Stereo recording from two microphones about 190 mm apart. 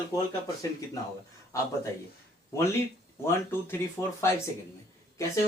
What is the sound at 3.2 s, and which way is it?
Speech, 15° left (ahead or behind).